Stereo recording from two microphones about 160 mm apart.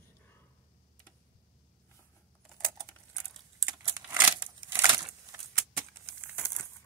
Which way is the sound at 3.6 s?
10° right (ahead or behind).